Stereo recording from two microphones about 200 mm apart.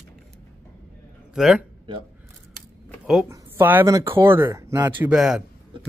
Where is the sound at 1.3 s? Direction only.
5° right (ahead or behind).